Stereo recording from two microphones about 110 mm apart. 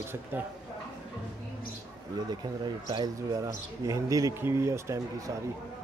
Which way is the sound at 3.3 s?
30° right (ahead or behind).